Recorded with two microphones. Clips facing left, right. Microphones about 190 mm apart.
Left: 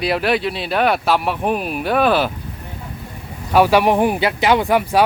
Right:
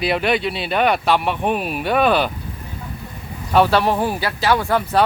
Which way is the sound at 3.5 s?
10° left (ahead or behind).